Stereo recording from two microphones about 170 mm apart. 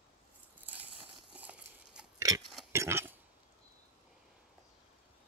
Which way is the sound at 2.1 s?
20° right (ahead or behind).